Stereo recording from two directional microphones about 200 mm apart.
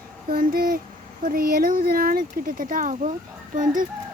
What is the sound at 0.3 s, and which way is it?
Speech, 45° right (ahead or behind).